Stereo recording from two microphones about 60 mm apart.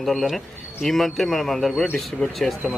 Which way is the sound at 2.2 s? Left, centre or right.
Centre.